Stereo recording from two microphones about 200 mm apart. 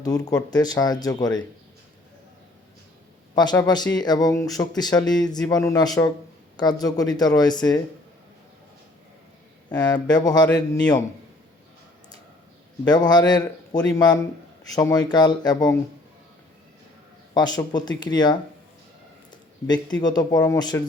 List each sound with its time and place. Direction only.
0.0 s a man's voice: 20° left (ahead or behind)
3.3 s a man's voice: 20° left (ahead or behind)
9.6 s a man's voice: 20° left (ahead or behind)
12.8 s a man's voice: 20° left (ahead or behind)
17.3 s a man's voice: 20° left (ahead or behind)
19.6 s a man's voice: 20° left (ahead or behind)